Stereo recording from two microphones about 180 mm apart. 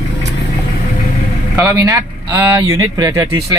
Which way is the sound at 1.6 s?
20° right (ahead or behind).